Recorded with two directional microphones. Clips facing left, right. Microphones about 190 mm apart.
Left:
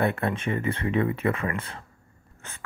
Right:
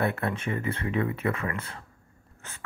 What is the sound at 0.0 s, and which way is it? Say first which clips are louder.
Speech: left 3 dB; 25° left (ahead or behind).